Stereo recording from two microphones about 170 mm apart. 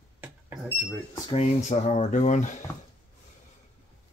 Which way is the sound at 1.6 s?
45° left (ahead or behind).